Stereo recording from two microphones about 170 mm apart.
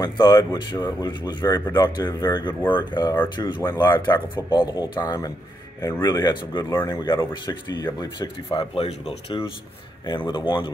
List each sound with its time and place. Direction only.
0.0 s speech: 25° left (ahead or behind)
2.6 s speech: 15° left (ahead or behind)
2.9 s speech: 25° left (ahead or behind)
3.6 s speech: 15° left (ahead or behind)